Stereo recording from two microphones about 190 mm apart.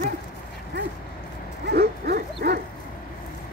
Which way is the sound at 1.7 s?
60° right (ahead or behind).